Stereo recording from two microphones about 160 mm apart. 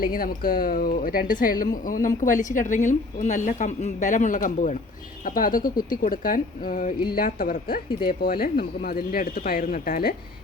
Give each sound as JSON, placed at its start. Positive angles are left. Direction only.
{"t": 0.0, "sound": "speech", "side_deg": 65}